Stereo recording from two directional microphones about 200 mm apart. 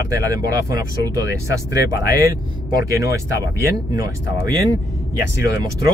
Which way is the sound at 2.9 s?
15° right (ahead or behind).